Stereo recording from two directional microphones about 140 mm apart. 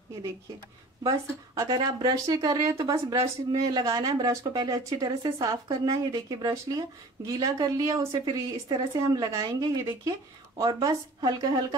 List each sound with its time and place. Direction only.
1.0 s speech: 25° right (ahead or behind)